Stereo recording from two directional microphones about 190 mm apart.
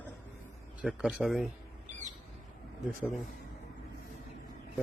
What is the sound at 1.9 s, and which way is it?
Squawk, 40° right (ahead or behind).